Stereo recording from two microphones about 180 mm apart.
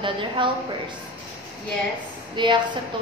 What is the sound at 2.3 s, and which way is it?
Speech, 25° right (ahead or behind).